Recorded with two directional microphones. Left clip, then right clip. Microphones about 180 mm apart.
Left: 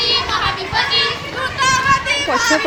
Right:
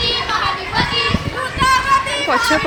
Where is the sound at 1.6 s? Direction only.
Centre (ahead or behind).